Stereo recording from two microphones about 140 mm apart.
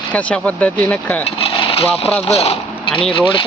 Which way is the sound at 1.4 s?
45° left (ahead or behind).